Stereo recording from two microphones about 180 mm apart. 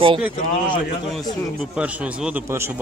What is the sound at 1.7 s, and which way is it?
Speech, 5° right (ahead or behind).